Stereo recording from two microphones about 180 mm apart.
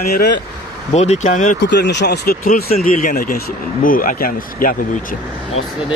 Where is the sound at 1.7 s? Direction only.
70° left (ahead or behind); by 4.7 s 50° left (ahead or behind).